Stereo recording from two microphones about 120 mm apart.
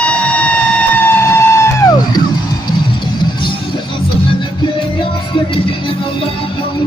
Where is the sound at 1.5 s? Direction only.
25° left (ahead or behind).